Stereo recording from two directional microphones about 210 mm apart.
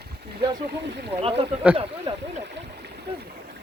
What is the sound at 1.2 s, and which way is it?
Speech, 30° right (ahead or behind).